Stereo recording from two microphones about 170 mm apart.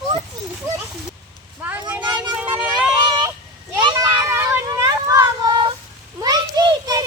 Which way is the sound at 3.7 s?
25° right (ahead or behind).